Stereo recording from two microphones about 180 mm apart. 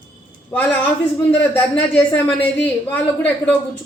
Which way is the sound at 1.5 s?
10° left (ahead or behind).